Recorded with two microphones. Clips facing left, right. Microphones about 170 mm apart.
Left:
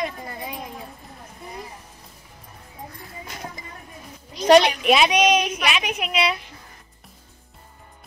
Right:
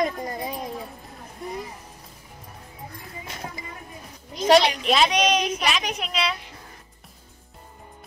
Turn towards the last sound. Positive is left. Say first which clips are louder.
# left 4 dB
turn(degrees=10)  # may be behind; listen again after turning